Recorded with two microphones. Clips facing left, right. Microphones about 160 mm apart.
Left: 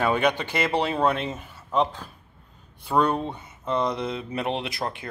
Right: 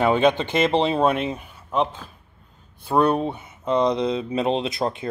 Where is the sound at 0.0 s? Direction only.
25° right (ahead or behind).